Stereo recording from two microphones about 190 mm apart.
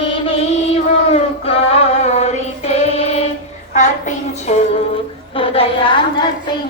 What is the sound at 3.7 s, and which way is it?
Child singing, 40° left (ahead or behind).